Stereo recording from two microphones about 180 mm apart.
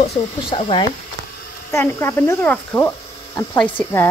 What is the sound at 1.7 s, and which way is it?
Speech, 15° left (ahead or behind).